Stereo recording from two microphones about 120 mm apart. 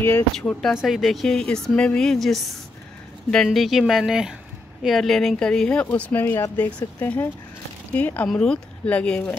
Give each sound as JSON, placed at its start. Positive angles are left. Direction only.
{"t": 0.4, "sound": "speech", "side_deg": 5}